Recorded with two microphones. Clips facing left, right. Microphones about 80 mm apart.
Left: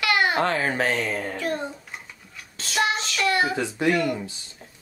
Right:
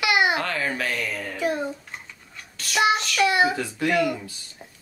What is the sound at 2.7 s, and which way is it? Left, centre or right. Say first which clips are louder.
Child singing: right 1 dB; left.